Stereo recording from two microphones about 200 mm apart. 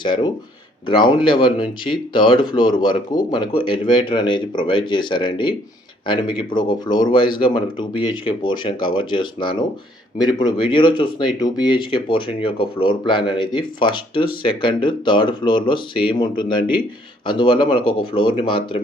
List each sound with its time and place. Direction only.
0.0 s speech: 25° left (ahead or behind)